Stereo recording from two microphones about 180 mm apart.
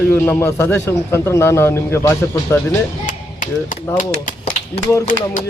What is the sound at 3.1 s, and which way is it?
Chop, 45° left (ahead or behind).